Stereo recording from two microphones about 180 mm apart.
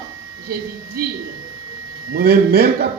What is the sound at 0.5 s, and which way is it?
A woman's voice, 55° right (ahead or behind).